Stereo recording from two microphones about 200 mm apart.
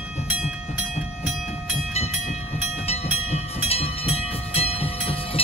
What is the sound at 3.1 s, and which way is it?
Train, 30° left (ahead or behind).